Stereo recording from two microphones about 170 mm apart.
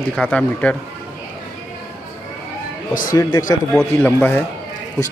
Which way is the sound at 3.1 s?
20° left (ahead or behind).